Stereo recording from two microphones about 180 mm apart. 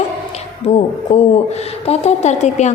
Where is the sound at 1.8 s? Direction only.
40° left (ahead or behind).